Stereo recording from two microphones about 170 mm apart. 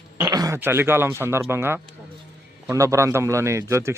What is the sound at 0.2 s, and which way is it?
Throat clearing, 20° right (ahead or behind).